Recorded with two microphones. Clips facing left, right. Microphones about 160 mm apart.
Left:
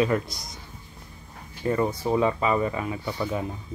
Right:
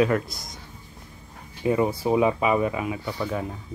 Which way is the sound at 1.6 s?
10° right (ahead or behind).